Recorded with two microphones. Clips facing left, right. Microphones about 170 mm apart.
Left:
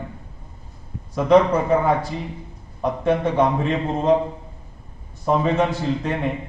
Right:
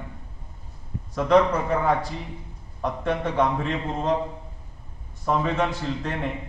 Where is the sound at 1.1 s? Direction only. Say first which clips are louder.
Left 4 dB; 10° left (ahead or behind).